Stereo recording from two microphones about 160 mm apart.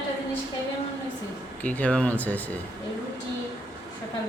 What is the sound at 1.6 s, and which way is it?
A man's voice, 10° left (ahead or behind).